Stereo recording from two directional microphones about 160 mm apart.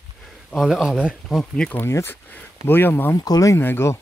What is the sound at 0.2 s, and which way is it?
Speech, centre (ahead or behind).